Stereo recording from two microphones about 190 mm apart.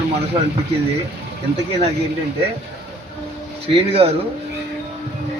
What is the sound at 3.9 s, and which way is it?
Speech, 30° right (ahead or behind).